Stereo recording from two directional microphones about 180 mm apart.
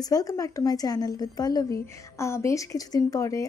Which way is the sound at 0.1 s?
20° left (ahead or behind).